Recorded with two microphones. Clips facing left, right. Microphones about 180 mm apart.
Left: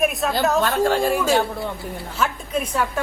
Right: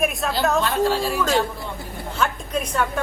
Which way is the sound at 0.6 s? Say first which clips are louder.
Left 2 dB; 50° left (ahead or behind).